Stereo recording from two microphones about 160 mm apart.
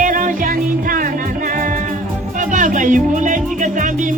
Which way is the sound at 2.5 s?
55° right (ahead or behind).